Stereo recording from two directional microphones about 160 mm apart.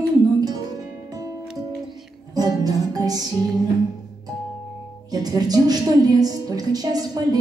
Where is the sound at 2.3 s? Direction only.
25° right (ahead or behind).